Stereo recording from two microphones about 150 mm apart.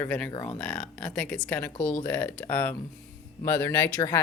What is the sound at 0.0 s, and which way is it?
Speech, 10° left (ahead or behind).